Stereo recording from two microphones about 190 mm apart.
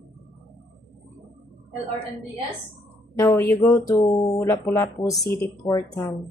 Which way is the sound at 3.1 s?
15° left (ahead or behind).